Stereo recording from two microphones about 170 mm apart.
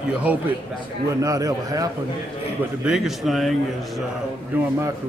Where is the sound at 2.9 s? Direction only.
Centre (ahead or behind).